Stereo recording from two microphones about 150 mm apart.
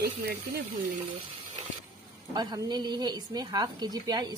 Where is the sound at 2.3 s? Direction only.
30° right (ahead or behind).